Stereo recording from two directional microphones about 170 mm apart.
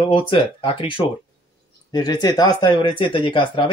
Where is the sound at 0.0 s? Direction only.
30° left (ahead or behind).